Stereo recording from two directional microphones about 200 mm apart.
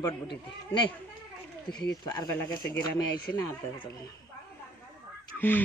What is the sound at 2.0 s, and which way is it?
Speech, 15° left (ahead or behind).